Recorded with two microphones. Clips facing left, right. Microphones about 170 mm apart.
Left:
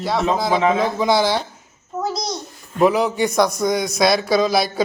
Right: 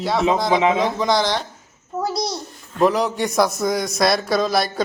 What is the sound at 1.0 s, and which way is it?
Speech, 5° left (ahead or behind).